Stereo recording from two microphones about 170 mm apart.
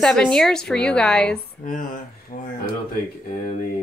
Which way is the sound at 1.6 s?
50° left (ahead or behind).